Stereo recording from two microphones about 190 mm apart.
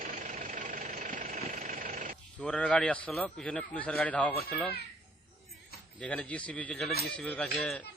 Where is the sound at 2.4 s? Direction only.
5° left (ahead or behind).